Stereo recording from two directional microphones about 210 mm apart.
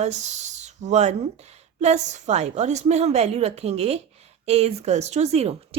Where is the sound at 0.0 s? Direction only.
35° right (ahead or behind).